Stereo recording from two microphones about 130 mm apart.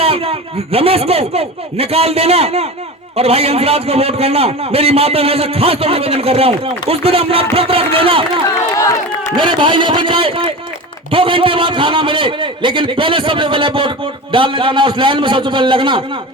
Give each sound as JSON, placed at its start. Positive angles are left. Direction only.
{"t": 0.0, "sound": "a man's voice", "side_deg": -50}
{"t": 8.4, "sound": "speech", "side_deg": 25}
{"t": 9.3, "sound": "a man's voice", "side_deg": -40}